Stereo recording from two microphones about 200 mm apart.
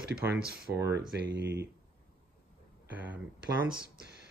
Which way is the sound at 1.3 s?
60° right (ahead or behind).